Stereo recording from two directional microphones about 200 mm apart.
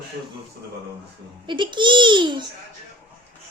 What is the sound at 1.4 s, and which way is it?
A child's voice, 25° right (ahead or behind).